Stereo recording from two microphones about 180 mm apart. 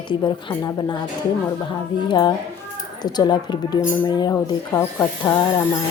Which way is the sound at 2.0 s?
25° left (ahead or behind).